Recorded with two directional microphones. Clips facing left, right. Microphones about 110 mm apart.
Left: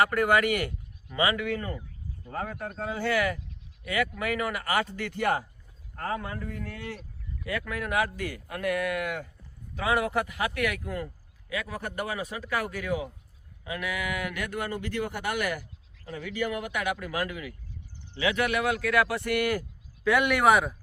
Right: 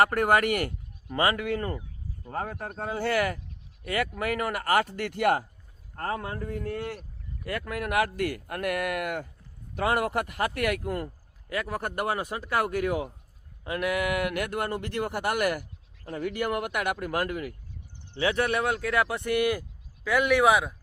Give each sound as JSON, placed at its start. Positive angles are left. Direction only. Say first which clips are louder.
{"t": 0.0, "sound": "speech", "louder": "right 1 dB", "side_deg": -45}
{"t": 6.0, "sound": "speech", "louder": "right 1 dB", "side_deg": -45}
{"t": 18.2, "sound": "speech", "louder": "right 1 dB", "side_deg": -35}
{"t": 20.1, "sound": "speech", "louder": "even", "side_deg": 0}